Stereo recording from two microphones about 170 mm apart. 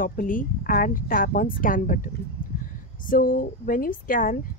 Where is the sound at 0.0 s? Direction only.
55° left (ahead or behind).